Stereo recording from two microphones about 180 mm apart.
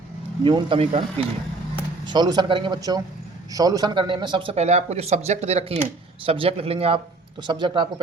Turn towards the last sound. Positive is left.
turn(degrees=-25)  # may be behind; listen again after turning